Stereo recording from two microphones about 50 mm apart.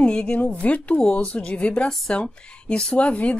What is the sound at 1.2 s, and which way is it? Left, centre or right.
Speech, centre.